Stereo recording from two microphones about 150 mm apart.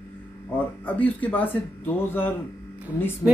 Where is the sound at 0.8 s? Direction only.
10° left (ahead or behind).